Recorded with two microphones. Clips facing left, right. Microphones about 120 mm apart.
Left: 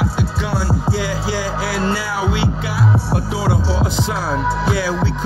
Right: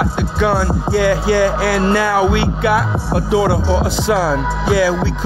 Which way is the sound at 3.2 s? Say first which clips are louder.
Right 6 dB; 85° right.